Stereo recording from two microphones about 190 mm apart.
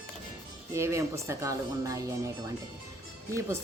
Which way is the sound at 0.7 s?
15° right (ahead or behind).